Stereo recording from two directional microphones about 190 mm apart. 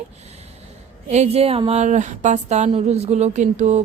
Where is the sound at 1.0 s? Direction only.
35° right (ahead or behind).